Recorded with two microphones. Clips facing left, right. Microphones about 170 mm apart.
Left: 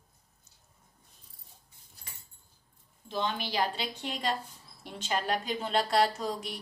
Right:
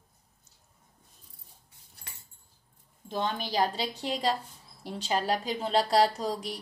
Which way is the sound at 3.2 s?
45° right (ahead or behind).